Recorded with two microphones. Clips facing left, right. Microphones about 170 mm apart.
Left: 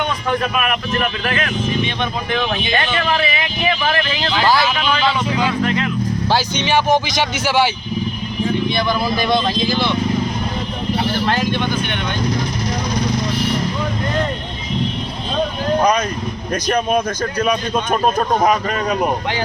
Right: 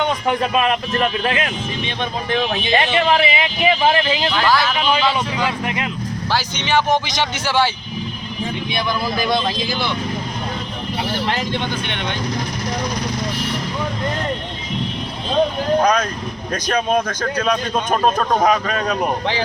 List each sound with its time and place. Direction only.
0.0 s speech: 20° right (ahead or behind)
4.4 s speech: 10° left (ahead or behind)
4.8 s speech: 15° right (ahead or behind)
6.3 s speech: 10° left (ahead or behind)
11.3 s speech: 25° right (ahead or behind)
16.5 s speech: 10° left (ahead or behind)